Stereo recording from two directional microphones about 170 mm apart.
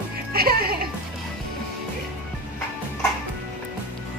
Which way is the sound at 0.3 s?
60° right (ahead or behind).